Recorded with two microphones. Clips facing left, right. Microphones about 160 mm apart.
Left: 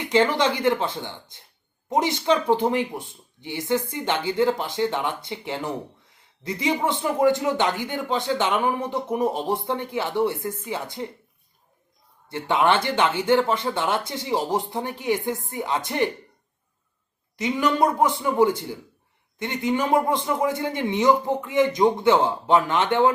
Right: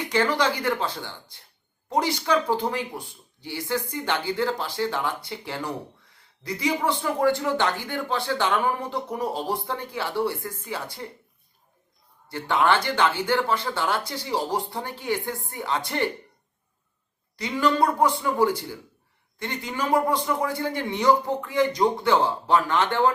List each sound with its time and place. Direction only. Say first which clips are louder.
0.0 s speech: left 3 dB; 20° left (ahead or behind)
12.3 s speech: left 1 dB; 20° left (ahead or behind)
17.3 s speech: left 1 dB; 20° left (ahead or behind)